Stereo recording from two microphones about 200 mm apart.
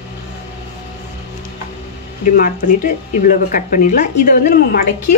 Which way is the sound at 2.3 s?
45° left (ahead or behind).